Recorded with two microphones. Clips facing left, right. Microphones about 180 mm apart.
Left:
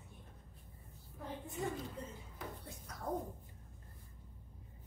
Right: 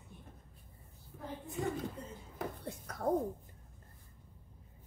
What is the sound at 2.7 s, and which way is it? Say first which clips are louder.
Speech: right 7 dB; 60° right (ahead or behind).